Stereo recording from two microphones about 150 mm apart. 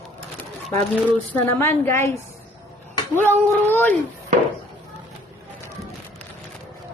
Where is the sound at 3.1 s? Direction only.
15° left (ahead or behind).